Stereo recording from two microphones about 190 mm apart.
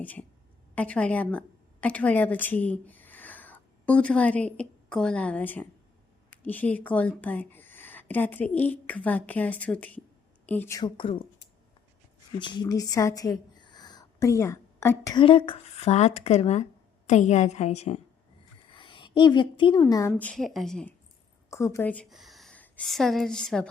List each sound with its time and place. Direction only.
0.0 s a woman's voice: 10° left (ahead or behind); by 11.2 s 25° left (ahead or behind)
12.4 s a woman's voice: 25° left (ahead or behind); by 20.9 s 5° left (ahead or behind)
21.5 s a woman's voice: 15° left (ahead or behind)